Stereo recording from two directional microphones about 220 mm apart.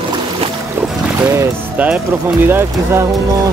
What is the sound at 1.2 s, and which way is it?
Speech, 10° right (ahead or behind).